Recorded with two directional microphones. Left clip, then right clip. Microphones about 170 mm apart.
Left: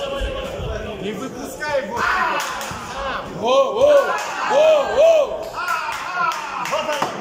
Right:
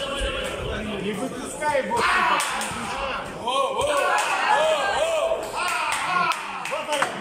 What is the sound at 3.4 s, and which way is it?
Speech, 60° left (ahead or behind).